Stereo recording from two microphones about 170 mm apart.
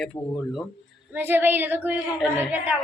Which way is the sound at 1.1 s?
10° right (ahead or behind).